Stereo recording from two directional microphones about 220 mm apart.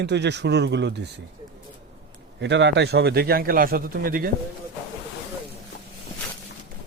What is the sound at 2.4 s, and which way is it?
A man's voice, 55° right (ahead or behind).